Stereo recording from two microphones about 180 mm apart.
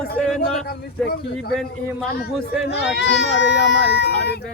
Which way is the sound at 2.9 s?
75° left (ahead or behind).